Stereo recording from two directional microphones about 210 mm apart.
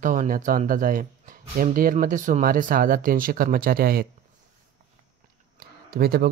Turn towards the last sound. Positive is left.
turn(degrees=-45)  # may be behind; listen again after turning